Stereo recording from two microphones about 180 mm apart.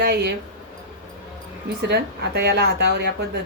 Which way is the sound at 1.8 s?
65° right (ahead or behind).